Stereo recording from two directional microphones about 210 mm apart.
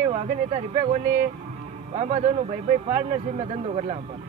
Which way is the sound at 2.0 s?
30° right (ahead or behind).